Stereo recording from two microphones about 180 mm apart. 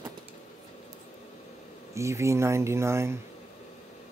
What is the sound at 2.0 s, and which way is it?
Speech, 15° right (ahead or behind).